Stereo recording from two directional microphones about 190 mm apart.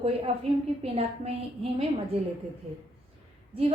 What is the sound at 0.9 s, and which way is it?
Speech, 35° right (ahead or behind).